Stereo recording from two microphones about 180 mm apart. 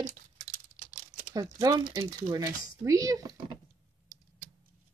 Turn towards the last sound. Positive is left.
turn(degrees=-20)  # may be behind; listen again after turning